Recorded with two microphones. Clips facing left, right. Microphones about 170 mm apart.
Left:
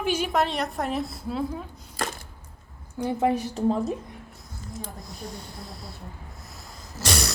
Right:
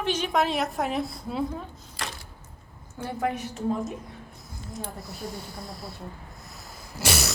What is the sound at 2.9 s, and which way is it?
Speech, 15° left (ahead or behind).